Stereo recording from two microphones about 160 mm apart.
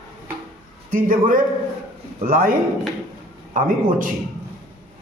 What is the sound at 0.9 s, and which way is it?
A man's voice, 60° right (ahead or behind).